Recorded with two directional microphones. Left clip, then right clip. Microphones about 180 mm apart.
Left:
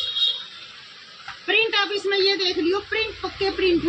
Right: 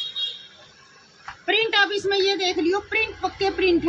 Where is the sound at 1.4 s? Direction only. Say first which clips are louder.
Right 1 dB; centre (ahead or behind).